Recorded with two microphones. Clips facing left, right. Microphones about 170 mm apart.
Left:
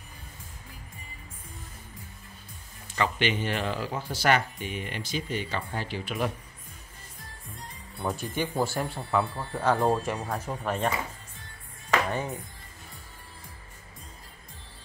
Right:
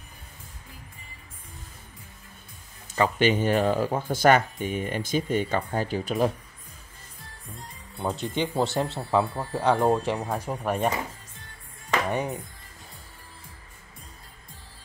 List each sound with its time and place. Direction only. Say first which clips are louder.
3.0 s speech: right 5 dB; 45° right (ahead or behind)
8.0 s speech: right 3 dB; 20° right (ahead or behind)
12.1 s speech: right 3 dB; 20° right (ahead or behind)